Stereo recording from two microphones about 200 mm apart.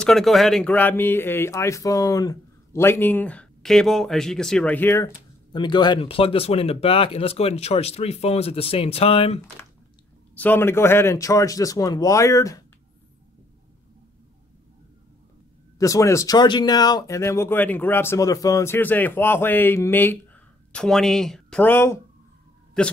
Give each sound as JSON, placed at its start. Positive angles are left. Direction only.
{"t": 0.0, "sound": "speech", "side_deg": 0}
{"t": 10.3, "sound": "speech", "side_deg": 10}
{"t": 15.8, "sound": "speech", "side_deg": 15}